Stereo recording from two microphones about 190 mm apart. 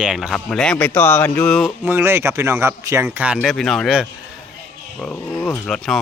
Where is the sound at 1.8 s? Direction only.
10° right (ahead or behind).